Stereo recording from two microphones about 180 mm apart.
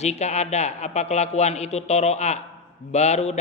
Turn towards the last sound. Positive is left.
turn(degrees=35)  # may be behind; listen again after turning